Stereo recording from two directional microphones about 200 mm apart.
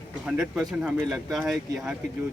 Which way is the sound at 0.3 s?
Centre (ahead or behind).